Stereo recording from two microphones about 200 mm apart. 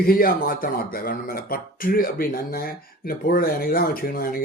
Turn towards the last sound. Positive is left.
turn(degrees=50)  # may be behind; listen again after turning